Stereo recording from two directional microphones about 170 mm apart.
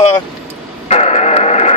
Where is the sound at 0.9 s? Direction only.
40° left (ahead or behind).